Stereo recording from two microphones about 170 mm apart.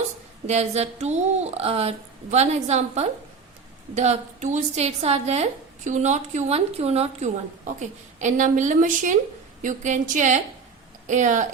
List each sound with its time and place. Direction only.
0.4 s a woman's voice: 40° right (ahead or behind)